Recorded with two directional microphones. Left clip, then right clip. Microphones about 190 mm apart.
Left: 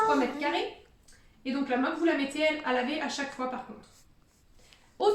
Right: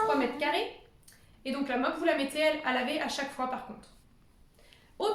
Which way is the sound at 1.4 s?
60° right (ahead or behind).